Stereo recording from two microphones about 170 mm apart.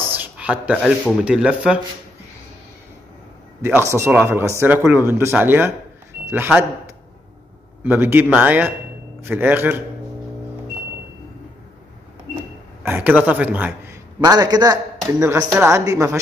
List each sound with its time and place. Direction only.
0.1 s a sound: 10° right (ahead or behind)
1.2 s speech: 5° right (ahead or behind)
3.6 s speech: 15° right (ahead or behind)
7.8 s speech: 10° right (ahead or behind)
12.8 s a man's voice: 10° right (ahead or behind)